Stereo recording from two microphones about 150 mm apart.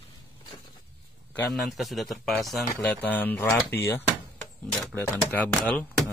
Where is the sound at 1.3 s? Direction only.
5° left (ahead or behind).